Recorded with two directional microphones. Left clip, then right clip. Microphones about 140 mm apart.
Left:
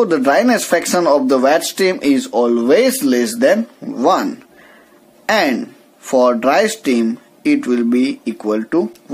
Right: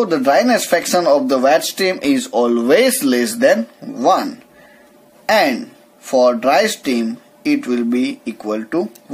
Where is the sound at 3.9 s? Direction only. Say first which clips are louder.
Even; 25° left (ahead or behind).